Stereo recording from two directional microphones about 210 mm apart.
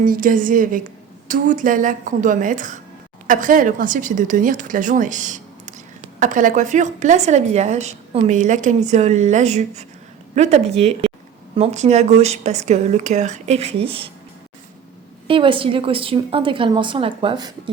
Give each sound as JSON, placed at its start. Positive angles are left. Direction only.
{"t": 0.0, "sound": "a woman's voice", "side_deg": -40}
{"t": 15.3, "sound": "a woman's voice", "side_deg": -25}